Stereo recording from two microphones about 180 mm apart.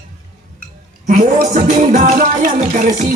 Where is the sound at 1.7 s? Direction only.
40° right (ahead or behind).